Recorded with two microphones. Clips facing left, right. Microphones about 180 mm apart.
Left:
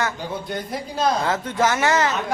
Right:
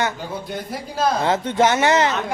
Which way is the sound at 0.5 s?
5° right (ahead or behind).